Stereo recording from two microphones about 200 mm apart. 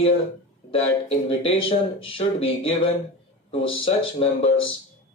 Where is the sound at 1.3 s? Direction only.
25° left (ahead or behind).